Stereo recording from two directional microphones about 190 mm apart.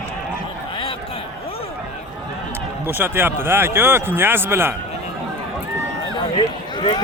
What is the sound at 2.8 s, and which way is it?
Speech, 10° right (ahead or behind).